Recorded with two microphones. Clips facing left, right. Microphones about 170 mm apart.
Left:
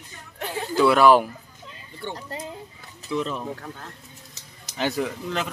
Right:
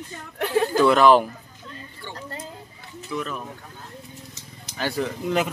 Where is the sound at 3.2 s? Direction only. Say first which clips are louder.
Left 3 dB; 30° left (ahead or behind).